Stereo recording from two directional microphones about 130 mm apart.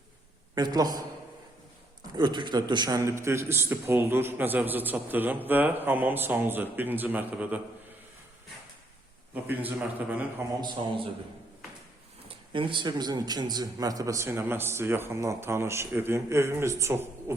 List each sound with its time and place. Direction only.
0.5 s a man's voice: 30° right (ahead or behind)
2.1 s a man's voice: 35° right (ahead or behind); by 7.6 s 15° right (ahead or behind)
9.3 s a man's voice: 15° right (ahead or behind)
12.3 s a man's voice: 40° right (ahead or behind); by 17.3 s 20° right (ahead or behind)